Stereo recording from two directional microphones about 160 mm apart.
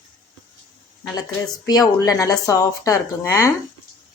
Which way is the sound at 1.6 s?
25° left (ahead or behind).